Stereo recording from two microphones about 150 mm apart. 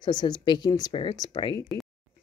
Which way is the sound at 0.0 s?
30° left (ahead or behind).